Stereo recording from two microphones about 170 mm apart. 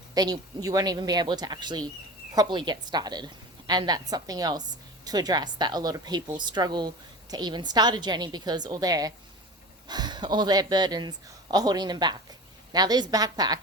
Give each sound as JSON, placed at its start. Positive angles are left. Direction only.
{"t": 0.1, "sound": "a woman's voice", "side_deg": -20}